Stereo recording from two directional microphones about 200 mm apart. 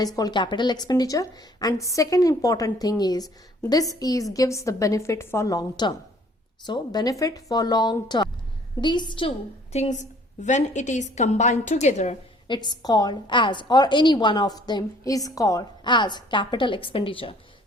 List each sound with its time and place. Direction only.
0.0 s a woman's voice: 20° left (ahead or behind)
9.7 s a woman's voice: 35° left (ahead or behind)
12.5 s a woman's voice: 20° left (ahead or behind)